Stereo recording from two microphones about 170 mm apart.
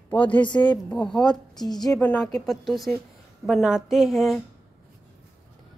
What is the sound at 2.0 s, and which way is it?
A woman's voice, 5° left (ahead or behind).